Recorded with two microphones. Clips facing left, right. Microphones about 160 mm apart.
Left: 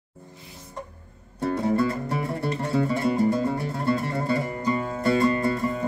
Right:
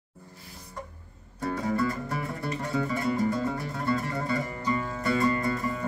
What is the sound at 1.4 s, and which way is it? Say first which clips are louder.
Music: left 5 dB; 25° left (ahead or behind).